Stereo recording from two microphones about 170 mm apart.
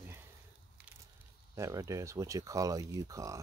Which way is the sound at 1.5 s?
20° right (ahead or behind).